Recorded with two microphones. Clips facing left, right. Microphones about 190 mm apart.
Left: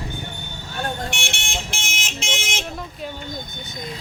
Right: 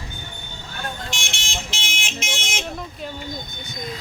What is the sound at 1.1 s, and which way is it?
Vehicle, 60° left (ahead or behind).